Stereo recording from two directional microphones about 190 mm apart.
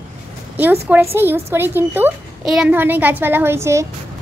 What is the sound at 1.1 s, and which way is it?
Speech, 10° right (ahead or behind).